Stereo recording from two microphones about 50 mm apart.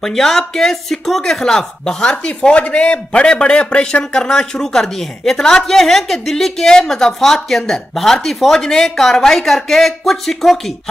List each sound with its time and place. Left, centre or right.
0.0 s speech: centre